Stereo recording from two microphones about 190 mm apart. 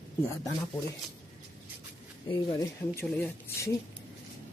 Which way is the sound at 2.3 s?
20° left (ahead or behind).